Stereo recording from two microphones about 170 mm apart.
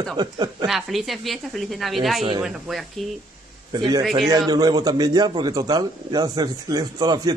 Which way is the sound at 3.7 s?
25° right (ahead or behind).